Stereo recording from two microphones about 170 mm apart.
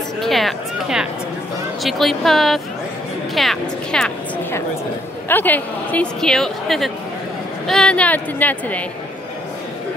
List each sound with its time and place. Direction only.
0.2 s a sound: centre (ahead or behind)
1.8 s a woman's voice: centre (ahead or behind)
5.3 s a woman's voice: 10° left (ahead or behind)